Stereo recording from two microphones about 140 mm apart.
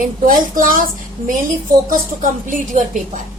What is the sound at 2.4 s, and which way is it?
Speech, 65° right (ahead or behind).